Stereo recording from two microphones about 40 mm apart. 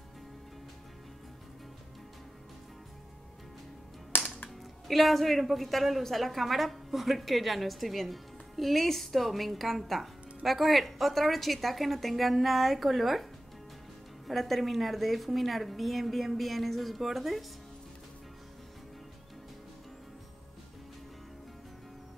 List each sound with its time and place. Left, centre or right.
4.8 s a man's voice: centre